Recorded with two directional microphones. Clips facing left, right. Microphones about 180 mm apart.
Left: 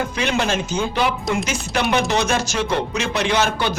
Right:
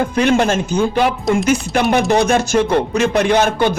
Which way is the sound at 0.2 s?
50° right (ahead or behind).